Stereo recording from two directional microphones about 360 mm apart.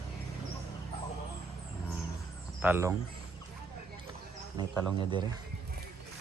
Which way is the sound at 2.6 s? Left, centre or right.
Centre.